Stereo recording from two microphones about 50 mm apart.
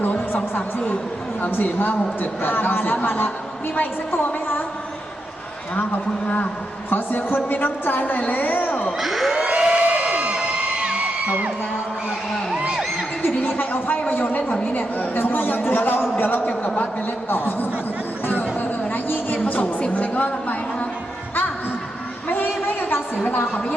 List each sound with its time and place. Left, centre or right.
0.0 s a sound: left
1.4 s a man's voice: left
6.2 s a woman's voice: left
6.9 s a woman's voice: left
9.0 s crowd: centre
9.3 s whoop: right
13.2 s a sound: left
14.1 s a man's voice: left
17.2 s a woman's voice: left
18.3 s a sound: left
19.9 s a woman's voice: left
22.3 s a sound: left
23.1 s a man's voice: left